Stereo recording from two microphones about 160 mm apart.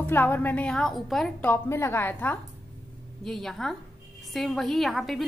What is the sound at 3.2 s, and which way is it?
A woman's voice, centre (ahead or behind).